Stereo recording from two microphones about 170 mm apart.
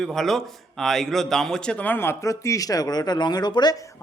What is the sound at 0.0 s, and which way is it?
A man's voice, centre (ahead or behind).